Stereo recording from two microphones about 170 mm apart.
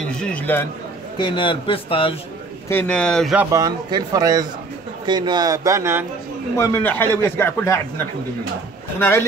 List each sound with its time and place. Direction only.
0.2 s a man's voice: 10° left (ahead or behind)
1.1 s a man's voice: 30° left (ahead or behind)
2.7 s speech: 10° left (ahead or behind)
3.5 s speech: 25° right (ahead or behind)
6.5 s a man's voice: 15° left (ahead or behind)